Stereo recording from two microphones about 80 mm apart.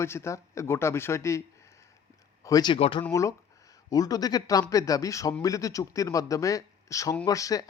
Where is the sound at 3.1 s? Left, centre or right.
Left.